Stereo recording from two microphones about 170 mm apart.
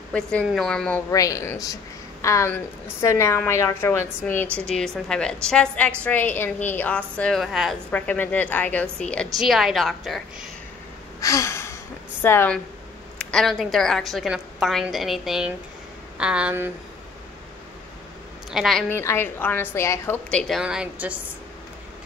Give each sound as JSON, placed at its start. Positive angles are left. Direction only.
{"t": 0.1, "sound": "a woman's voice", "side_deg": 5}
{"t": 1.1, "sound": "a woman's voice", "side_deg": 20}
{"t": 11.1, "sound": "gasp", "side_deg": 20}
{"t": 13.2, "sound": "a woman's voice", "side_deg": 5}
{"t": 18.5, "sound": "a woman's voice", "side_deg": 0}
{"t": 18.9, "sound": "a woman's voice", "side_deg": 15}